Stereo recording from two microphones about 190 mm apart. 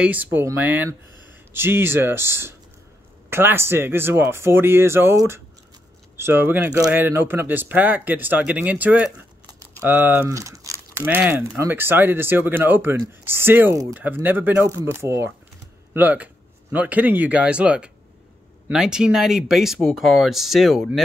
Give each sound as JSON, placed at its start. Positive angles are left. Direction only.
{"t": 0.0, "sound": "speech", "side_deg": -10}